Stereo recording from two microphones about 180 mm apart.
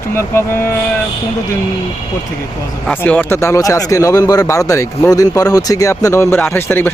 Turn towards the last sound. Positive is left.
turn(degrees=10)  # may be behind; listen again after turning